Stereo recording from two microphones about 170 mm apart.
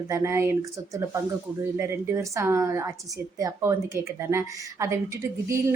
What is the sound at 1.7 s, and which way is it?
Speech, 15° right (ahead or behind).